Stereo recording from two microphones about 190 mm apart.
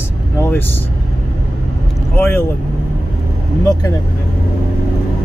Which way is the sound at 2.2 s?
10° left (ahead or behind).